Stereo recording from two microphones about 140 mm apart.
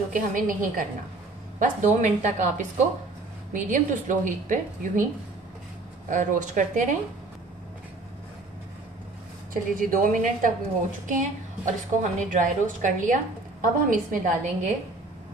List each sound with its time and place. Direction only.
0.1 s a woman's voice: 75° right (ahead or behind)
6.0 s a woman's voice: 70° right (ahead or behind)
9.5 s a woman's voice: 85° right
11.1 s a woman's voice: 65° right (ahead or behind)